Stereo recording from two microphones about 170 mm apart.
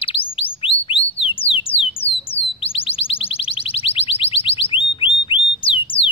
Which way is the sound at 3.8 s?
35° left (ahead or behind).